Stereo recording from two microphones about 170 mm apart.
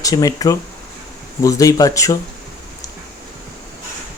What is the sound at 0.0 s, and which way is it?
A man's voice, 20° left (ahead or behind).